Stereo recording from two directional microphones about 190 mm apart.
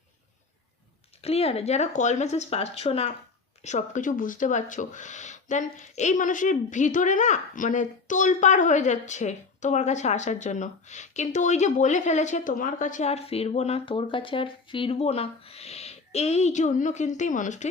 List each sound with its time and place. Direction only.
1.2 s speech: 30° left (ahead or behind)